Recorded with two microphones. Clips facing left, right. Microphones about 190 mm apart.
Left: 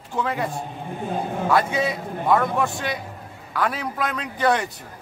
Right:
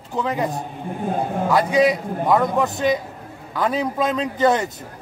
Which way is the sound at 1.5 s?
15° right (ahead or behind).